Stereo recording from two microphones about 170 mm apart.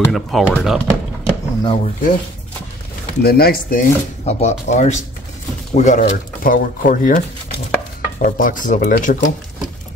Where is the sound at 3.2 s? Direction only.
65° left (ahead or behind).